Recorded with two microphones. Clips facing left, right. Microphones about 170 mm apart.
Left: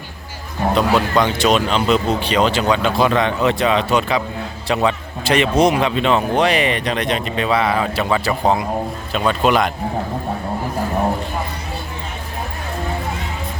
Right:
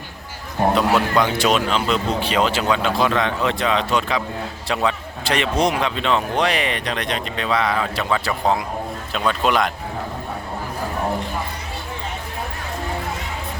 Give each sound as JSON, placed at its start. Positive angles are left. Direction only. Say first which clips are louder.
{"t": 0.6, "sound": "a man's voice", "louder": "right 1 dB", "side_deg": -50}
{"t": 0.9, "sound": "speech", "louder": "left 2 dB", "side_deg": -10}